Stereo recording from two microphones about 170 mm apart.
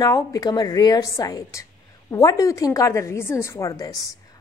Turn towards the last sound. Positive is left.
turn(degrees=20)  # may be behind; listen again after turning